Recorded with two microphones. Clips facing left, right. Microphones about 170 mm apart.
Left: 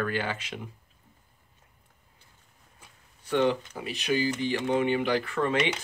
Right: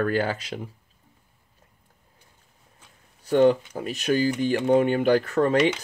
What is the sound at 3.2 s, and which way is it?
Speech, 40° right (ahead or behind).